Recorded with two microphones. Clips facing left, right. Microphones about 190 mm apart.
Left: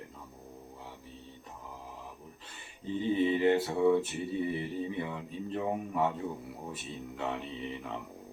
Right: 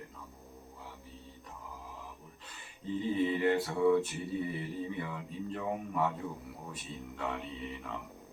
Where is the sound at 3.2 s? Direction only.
25° left (ahead or behind).